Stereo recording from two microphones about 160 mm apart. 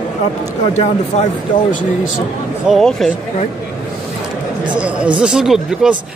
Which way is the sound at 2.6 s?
Centre (ahead or behind).